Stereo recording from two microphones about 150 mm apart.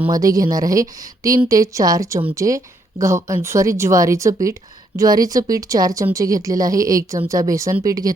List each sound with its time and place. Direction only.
0.1 s speech: 25° right (ahead or behind)